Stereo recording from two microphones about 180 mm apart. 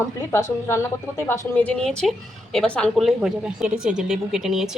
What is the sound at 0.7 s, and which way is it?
A woman's voice, 15° left (ahead or behind).